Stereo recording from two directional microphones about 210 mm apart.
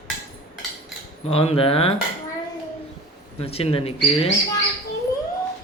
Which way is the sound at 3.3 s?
30° left (ahead or behind).